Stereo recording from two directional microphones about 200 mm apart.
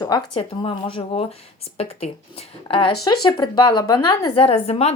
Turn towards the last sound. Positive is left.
turn(degrees=30)  # may be behind; listen again after turning